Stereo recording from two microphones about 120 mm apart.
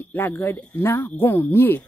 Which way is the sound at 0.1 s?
15° left (ahead or behind).